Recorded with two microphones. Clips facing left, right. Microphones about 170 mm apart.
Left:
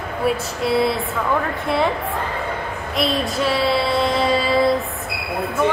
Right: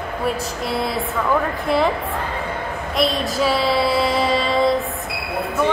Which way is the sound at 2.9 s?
Centre (ahead or behind).